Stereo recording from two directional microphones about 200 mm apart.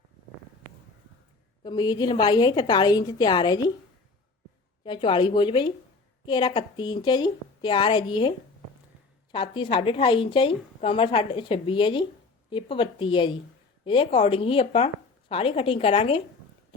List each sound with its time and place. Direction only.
1.6 s a woman's voice: 20° left (ahead or behind)
4.8 s a woman's voice: 25° left (ahead or behind)
9.3 s a woman's voice: 25° left (ahead or behind)